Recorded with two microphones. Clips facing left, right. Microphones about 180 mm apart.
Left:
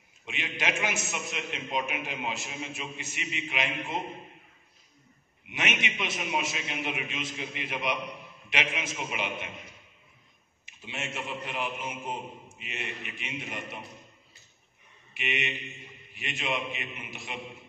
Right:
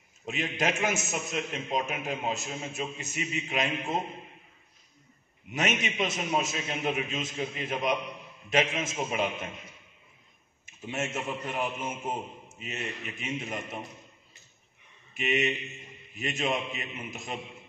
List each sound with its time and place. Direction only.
0.2 s a man's voice: 45° right (ahead or behind)
5.5 s a man's voice: 45° right (ahead or behind)
10.6 s a sound: 45° right (ahead or behind)
11.1 s a man's voice: 45° right (ahead or behind)
15.1 s a man's voice: 45° right (ahead or behind)